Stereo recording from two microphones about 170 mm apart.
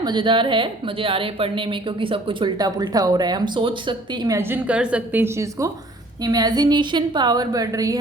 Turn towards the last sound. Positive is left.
turn(degrees=-20)  # may be behind; listen again after turning